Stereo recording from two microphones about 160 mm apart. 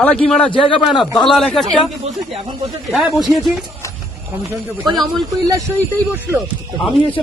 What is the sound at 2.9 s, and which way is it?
Speech, centre (ahead or behind).